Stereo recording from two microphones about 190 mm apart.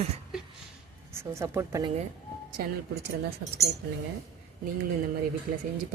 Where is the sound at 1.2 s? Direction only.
15° right (ahead or behind).